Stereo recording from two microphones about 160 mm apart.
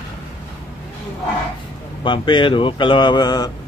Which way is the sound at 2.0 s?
30° left (ahead or behind).